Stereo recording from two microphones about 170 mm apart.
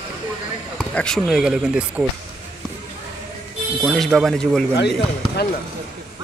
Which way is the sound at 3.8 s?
Centre (ahead or behind).